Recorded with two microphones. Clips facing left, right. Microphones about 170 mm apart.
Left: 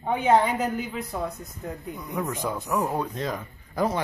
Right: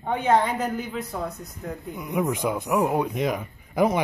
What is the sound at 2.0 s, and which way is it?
A man's voice, 15° right (ahead or behind).